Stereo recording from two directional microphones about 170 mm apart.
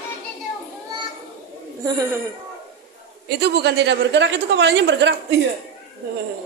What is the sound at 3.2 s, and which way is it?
A woman's voice, 75° right (ahead or behind).